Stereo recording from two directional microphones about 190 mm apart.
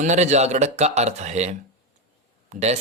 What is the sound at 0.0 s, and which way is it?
Speech, 35° right (ahead or behind).